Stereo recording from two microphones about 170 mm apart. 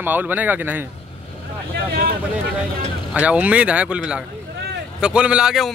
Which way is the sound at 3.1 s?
10° right (ahead or behind).